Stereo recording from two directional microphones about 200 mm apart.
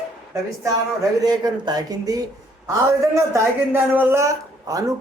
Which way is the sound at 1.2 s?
20° right (ahead or behind).